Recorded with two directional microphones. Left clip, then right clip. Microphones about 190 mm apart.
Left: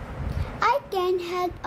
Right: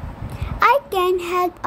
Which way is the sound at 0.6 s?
30° right (ahead or behind).